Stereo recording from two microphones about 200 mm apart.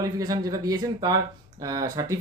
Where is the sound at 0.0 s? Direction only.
20° right (ahead or behind).